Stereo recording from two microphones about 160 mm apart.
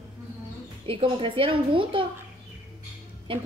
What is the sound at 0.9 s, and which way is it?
A woman's voice, 35° right (ahead or behind).